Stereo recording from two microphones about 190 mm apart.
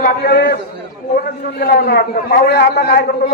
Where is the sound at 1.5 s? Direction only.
55° left (ahead or behind).